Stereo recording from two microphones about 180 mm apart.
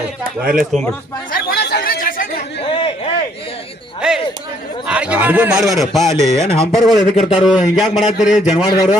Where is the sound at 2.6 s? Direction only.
30° left (ahead or behind).